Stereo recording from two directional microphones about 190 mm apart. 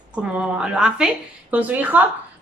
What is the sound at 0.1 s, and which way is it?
A woman's voice, 5° right (ahead or behind).